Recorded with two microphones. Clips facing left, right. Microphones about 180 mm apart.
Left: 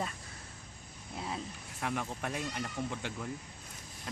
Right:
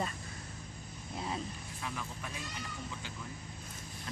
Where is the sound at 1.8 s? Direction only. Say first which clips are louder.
Left 7 dB; 70° left (ahead or behind).